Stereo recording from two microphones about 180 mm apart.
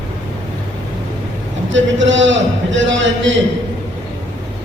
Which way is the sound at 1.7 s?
90° right.